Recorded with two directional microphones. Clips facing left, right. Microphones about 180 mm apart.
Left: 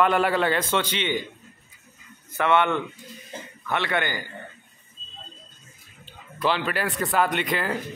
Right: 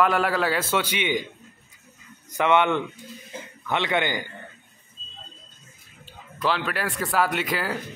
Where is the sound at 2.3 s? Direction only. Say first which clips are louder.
Right 1 dB; 15° right (ahead or behind).